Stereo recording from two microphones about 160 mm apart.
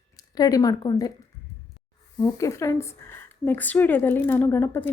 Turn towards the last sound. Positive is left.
turn(degrees=15)  # may be behind; listen again after turning